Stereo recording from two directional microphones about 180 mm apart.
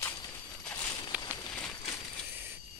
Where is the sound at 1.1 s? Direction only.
10° right (ahead or behind).